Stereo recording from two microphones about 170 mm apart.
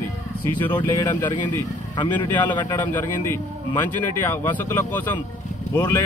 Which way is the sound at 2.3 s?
25° left (ahead or behind).